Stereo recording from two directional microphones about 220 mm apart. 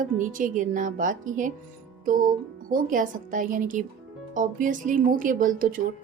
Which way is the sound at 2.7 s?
35° right (ahead or behind).